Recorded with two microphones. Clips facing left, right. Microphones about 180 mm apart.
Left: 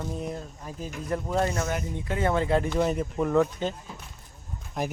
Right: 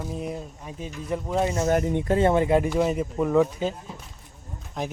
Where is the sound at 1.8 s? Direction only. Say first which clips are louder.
Right 9 dB; 75° right (ahead or behind).